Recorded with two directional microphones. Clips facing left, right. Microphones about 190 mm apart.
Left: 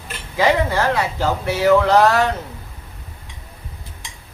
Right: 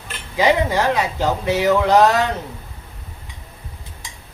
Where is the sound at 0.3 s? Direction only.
15° right (ahead or behind).